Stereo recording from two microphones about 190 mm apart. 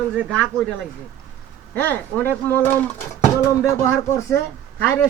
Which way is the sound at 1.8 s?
10° left (ahead or behind).